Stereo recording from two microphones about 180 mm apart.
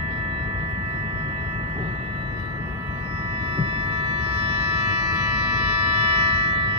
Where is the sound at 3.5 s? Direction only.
35° right (ahead or behind).